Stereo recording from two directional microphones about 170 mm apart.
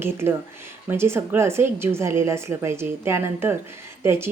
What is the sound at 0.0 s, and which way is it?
A woman's voice, 15° right (ahead or behind).